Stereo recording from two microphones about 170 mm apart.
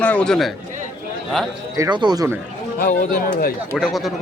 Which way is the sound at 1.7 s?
20° right (ahead or behind).